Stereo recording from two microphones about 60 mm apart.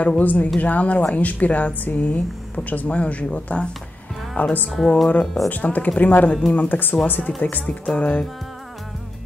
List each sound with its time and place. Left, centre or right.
0.2 s speech: left
4.6 s speech: centre
5.5 s speech: left
7.8 s music: centre